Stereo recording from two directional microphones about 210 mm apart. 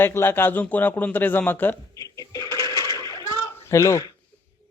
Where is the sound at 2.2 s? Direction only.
15° left (ahead or behind).